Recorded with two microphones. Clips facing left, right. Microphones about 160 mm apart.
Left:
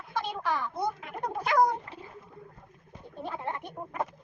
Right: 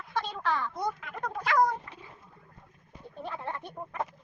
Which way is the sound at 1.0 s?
25° left (ahead or behind).